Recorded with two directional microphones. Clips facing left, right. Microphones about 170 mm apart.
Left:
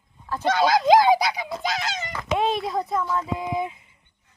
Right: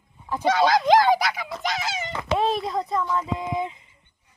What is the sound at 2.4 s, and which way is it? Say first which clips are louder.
Speech: left 1 dB; centre (ahead or behind).